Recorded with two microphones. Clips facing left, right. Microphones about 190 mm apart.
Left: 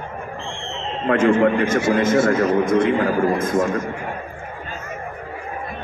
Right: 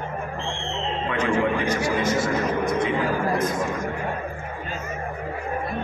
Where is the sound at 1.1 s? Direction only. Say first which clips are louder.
Left 8 dB; 50° left (ahead or behind).